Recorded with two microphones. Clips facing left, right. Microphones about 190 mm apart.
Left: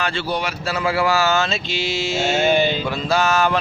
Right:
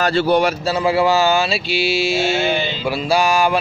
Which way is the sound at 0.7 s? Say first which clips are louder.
Right 3 dB; 20° right (ahead or behind).